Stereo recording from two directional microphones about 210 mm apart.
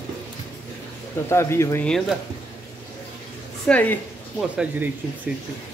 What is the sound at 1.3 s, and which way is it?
Speech, 10° left (ahead or behind).